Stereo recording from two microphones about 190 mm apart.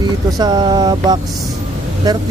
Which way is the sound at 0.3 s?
20° right (ahead or behind).